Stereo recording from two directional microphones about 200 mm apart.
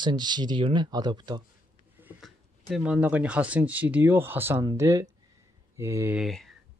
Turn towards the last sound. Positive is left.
turn(degrees=0)  # may be behind; listen again after turning